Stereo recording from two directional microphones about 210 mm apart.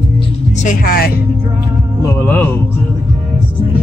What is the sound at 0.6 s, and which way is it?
Speech, 40° left (ahead or behind).